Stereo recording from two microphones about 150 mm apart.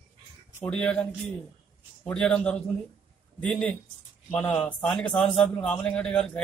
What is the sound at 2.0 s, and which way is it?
A man's voice, 5° left (ahead or behind).